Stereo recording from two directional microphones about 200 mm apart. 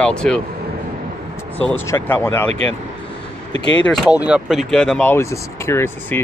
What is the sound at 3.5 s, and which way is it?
Speech, 65° left (ahead or behind).